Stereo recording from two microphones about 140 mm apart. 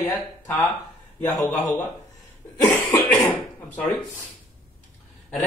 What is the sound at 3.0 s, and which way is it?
Cough, 15° left (ahead or behind).